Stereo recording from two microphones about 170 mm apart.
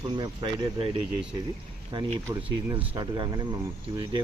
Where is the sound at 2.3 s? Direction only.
15° right (ahead or behind).